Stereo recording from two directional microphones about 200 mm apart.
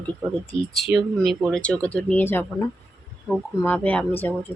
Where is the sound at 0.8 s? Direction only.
Centre (ahead or behind).